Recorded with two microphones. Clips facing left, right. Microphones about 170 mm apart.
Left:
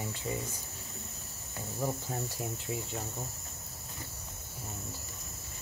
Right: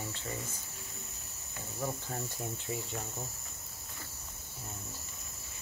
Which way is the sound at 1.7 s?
10° left (ahead or behind).